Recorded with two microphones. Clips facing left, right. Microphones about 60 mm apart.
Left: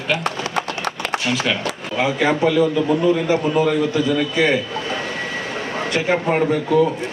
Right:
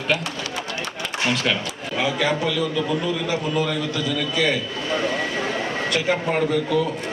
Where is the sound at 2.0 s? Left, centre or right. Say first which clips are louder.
Left 5 dB; left.